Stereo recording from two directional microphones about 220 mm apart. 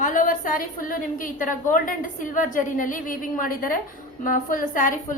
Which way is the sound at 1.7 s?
35° left (ahead or behind).